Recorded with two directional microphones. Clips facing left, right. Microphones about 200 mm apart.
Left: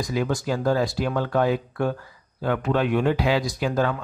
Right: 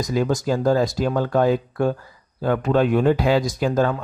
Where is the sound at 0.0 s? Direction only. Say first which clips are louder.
Right 4 dB; 40° right (ahead or behind).